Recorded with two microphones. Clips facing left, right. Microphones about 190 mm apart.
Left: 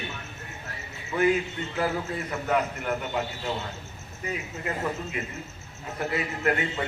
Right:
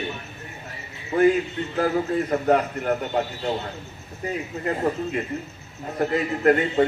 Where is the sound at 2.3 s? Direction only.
45° right (ahead or behind).